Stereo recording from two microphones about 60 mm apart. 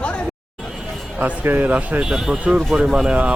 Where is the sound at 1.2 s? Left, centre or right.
Right.